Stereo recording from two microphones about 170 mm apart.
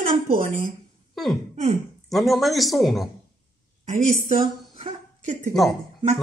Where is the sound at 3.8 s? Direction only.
40° right (ahead or behind).